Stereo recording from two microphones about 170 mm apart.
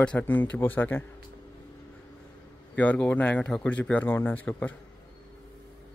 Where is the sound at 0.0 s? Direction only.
10° left (ahead or behind).